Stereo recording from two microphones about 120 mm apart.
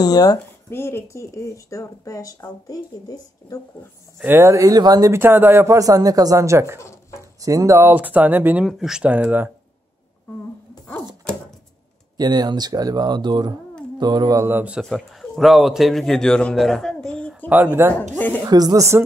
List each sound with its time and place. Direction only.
0.2 s speech: 20° left (ahead or behind)
4.2 s speech: 20° right (ahead or behind)
5.1 s speech: 20° right (ahead or behind)
6.8 s a sound: 25° left (ahead or behind)
7.3 s speech: 30° right (ahead or behind)
8.6 s speech: centre (ahead or behind)
12.2 s speech: 35° right (ahead or behind)
14.4 s speech: 15° right (ahead or behind)
14.8 s a man's voice: centre (ahead or behind)
17.5 s speech: 15° right (ahead or behind)
18.1 s a woman's voice: 15° left (ahead or behind)
18.4 s speech: 30° right (ahead or behind)